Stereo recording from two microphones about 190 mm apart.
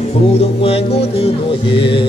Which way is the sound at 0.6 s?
30° left (ahead or behind).